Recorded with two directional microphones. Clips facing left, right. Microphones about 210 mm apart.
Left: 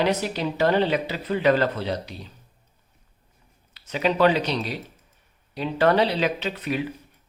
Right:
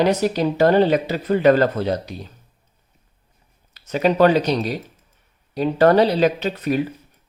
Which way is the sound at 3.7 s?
45° right (ahead or behind).